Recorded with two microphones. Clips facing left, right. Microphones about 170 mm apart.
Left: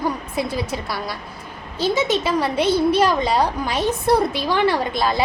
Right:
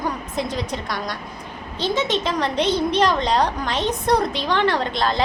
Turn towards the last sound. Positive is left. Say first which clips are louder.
# left 1 dB
turn(degrees=10)  # may be behind; listen again after turning